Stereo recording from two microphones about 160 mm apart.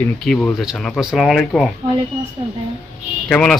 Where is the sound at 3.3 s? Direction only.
5° left (ahead or behind).